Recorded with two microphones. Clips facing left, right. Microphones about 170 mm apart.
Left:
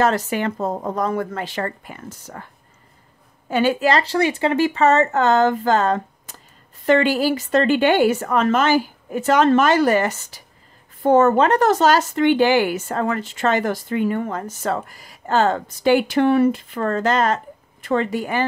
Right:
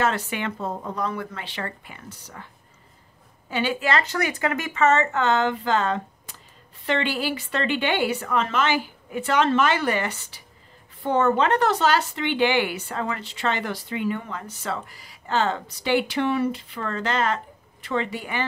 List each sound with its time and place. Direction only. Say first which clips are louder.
0.0 s speech: left 6 dB; 40° left (ahead or behind)
3.4 s speech: left 7 dB; 45° left (ahead or behind)